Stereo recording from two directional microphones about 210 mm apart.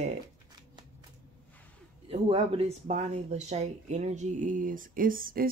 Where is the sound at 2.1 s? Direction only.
30° right (ahead or behind).